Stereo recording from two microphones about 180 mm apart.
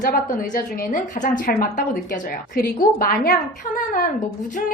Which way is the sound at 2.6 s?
55° left (ahead or behind).